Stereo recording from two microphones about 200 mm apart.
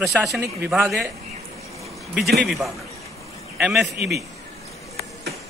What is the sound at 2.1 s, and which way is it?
A man's voice, centre (ahead or behind).